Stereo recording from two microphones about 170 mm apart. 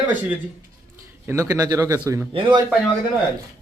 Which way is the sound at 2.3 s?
30° right (ahead or behind).